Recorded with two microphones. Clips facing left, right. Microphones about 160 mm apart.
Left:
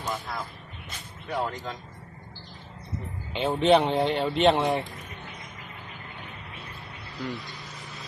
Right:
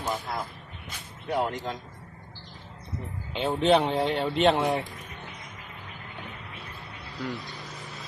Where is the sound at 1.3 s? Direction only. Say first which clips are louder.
Right 2 dB; 20° right (ahead or behind).